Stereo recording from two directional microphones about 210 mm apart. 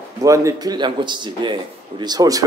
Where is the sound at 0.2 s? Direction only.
15° right (ahead or behind).